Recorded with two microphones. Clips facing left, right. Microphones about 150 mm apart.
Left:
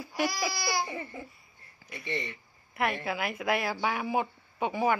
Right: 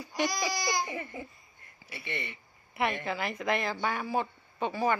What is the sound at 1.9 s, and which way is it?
Speech, 5° right (ahead or behind).